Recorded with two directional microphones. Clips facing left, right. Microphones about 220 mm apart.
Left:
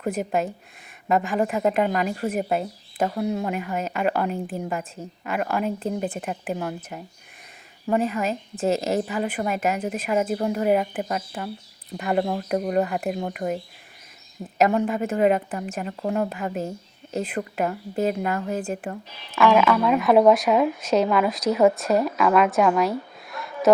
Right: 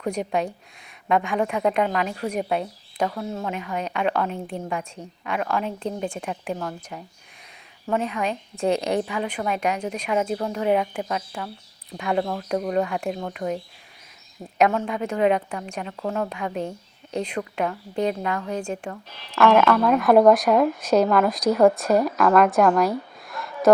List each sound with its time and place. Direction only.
0.0 s a woman's voice: 5° left (ahead or behind)
3.1 s a woman's voice: 15° left (ahead or behind)
3.4 s a woman's voice: 5° left (ahead or behind)
12.5 s a woman's voice: 15° left (ahead or behind)
12.8 s a woman's voice: 5° left (ahead or behind)
14.8 s a woman's voice: 5° left (ahead or behind)
15.9 s a woman's voice: 15° left (ahead or behind)
16.3 s a woman's voice: 5° left (ahead or behind)